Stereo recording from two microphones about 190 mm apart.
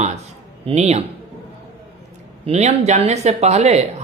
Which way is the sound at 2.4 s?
35° right (ahead or behind).